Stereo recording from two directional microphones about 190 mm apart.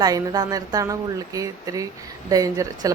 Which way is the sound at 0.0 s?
20° right (ahead or behind).